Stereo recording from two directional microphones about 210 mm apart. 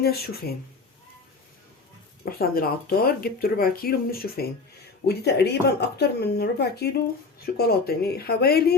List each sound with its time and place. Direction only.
0.0 s speech: 50° left (ahead or behind)
2.4 s speech: 45° left (ahead or behind)